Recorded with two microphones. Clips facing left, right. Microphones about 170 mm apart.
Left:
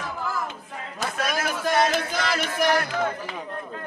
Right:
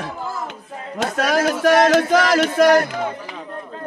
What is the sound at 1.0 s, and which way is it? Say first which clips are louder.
Speech: right 9 dB; 85° right.